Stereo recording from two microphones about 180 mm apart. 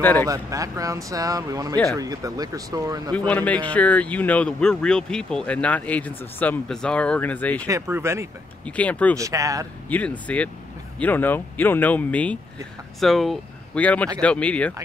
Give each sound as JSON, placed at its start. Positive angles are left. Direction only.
{"t": 0.0, "sound": "speech", "side_deg": 10}
{"t": 0.3, "sound": "a man's voice", "side_deg": -20}
{"t": 3.1, "sound": "speech", "side_deg": 10}
{"t": 7.6, "sound": "speech", "side_deg": -15}
{"t": 8.6, "sound": "speech", "side_deg": 10}
{"t": 9.1, "sound": "a man's voice", "side_deg": -20}
{"t": 9.8, "sound": "speech", "side_deg": 10}